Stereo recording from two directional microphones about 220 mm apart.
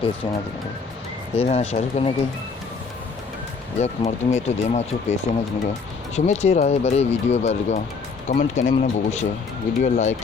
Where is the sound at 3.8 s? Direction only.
30° left (ahead or behind).